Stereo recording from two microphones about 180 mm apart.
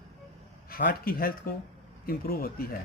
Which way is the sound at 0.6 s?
55° left (ahead or behind).